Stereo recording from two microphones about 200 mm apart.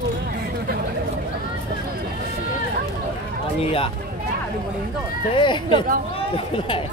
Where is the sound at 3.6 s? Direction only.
30° left (ahead or behind).